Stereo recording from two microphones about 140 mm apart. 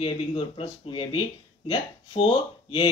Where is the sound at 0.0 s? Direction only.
40° left (ahead or behind).